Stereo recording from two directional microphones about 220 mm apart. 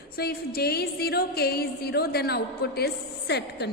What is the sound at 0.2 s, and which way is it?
A woman's voice, 45° left (ahead or behind).